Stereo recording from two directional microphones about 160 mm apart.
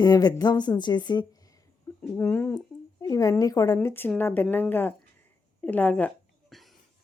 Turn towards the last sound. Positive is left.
turn(degrees=0)  # may be behind; listen again after turning